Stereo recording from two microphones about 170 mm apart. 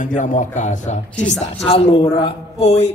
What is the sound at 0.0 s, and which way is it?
A man's voice, 50° left (ahead or behind).